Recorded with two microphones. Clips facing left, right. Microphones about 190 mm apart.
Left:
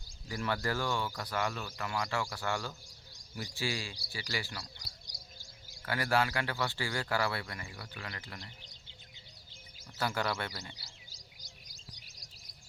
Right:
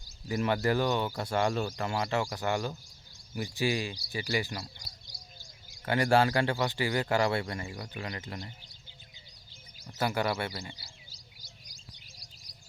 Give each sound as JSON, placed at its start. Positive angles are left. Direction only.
{"t": 0.3, "sound": "speech", "side_deg": -20}
{"t": 4.6, "sound": "a sound", "side_deg": -25}
{"t": 5.8, "sound": "speech", "side_deg": -25}
{"t": 9.8, "sound": "speech", "side_deg": -20}